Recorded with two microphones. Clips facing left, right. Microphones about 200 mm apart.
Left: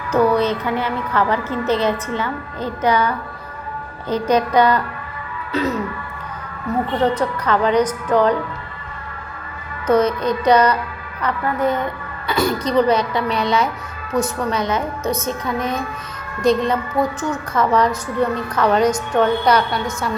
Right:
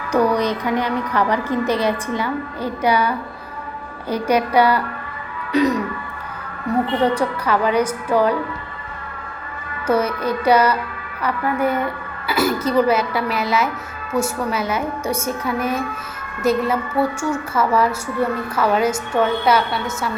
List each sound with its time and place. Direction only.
0.1 s a woman's voice: 15° right (ahead or behind)
5.5 s music: 15° right (ahead or behind)
7.0 s a woman's voice: 10° right (ahead or behind)
9.8 s a woman's voice: 10° right (ahead or behind)